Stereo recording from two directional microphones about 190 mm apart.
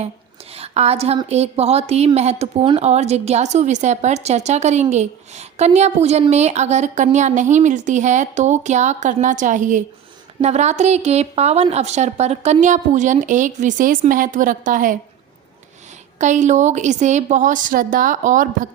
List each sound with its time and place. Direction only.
0.5 s a woman's voice: 35° right (ahead or behind)
16.1 s a woman's voice: 40° right (ahead or behind)